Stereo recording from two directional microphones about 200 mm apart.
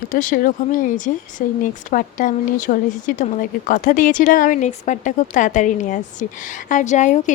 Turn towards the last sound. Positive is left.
turn(degrees=35)  # may be behind; listen again after turning